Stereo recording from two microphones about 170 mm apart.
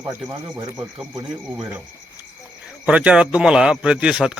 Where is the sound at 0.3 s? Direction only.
20° right (ahead or behind).